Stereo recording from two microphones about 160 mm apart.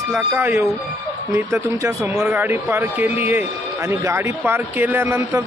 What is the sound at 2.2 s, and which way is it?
Speech, 10° right (ahead or behind).